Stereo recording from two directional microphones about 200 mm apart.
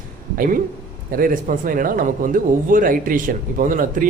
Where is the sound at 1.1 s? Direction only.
45° right (ahead or behind).